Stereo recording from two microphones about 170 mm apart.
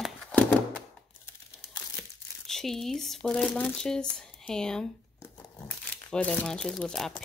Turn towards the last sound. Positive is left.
turn(degrees=5)  # may be behind; listen again after turning